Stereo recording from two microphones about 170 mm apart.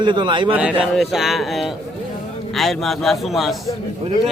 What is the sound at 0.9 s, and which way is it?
Speech, centre (ahead or behind).